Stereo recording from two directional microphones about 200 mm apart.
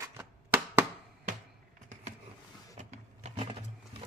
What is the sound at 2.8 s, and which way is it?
Power windows, 35° right (ahead or behind).